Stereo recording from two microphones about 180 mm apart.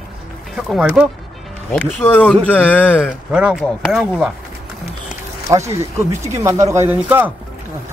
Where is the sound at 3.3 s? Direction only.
5° right (ahead or behind).